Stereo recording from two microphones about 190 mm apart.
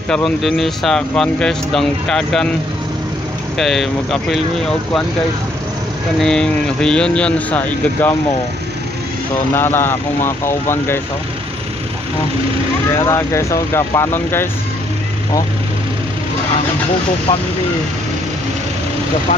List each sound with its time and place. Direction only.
0.1 s speech: centre (ahead or behind)
3.5 s speech: centre (ahead or behind)
6.1 s speech: 5° left (ahead or behind)
9.6 s speech: 10° left (ahead or behind)
12.9 s speech: 15° left (ahead or behind)
17.3 s speech: 15° left (ahead or behind)